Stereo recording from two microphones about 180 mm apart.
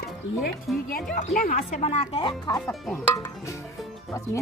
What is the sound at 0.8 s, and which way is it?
Speech, 50° left (ahead or behind).